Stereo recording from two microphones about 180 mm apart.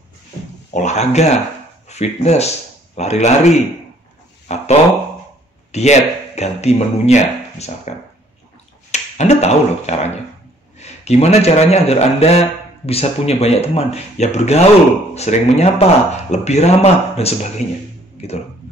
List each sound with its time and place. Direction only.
0.7 s speech: 40° left (ahead or behind)
5.7 s speech: 40° left (ahead or behind)
8.9 s speech: 40° left (ahead or behind)